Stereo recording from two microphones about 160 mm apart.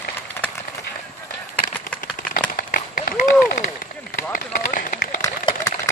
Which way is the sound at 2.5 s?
60° left (ahead or behind).